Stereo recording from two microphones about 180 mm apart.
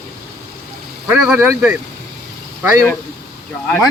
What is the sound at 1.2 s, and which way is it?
Speech, 10° right (ahead or behind).